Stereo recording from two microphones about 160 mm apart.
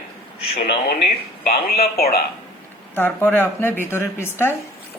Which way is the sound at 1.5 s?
70° left (ahead or behind).